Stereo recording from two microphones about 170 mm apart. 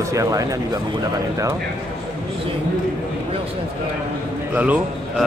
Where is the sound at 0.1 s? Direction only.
20° right (ahead or behind).